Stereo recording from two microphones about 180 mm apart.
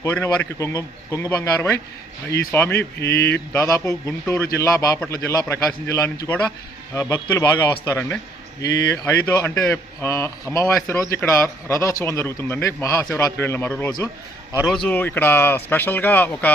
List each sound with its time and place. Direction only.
0.0 s a man's voice: 15° left (ahead or behind)